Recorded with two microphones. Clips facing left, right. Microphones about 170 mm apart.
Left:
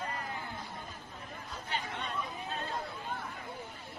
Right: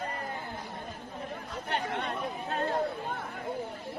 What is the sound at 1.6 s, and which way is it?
Chatter, 65° right (ahead or behind).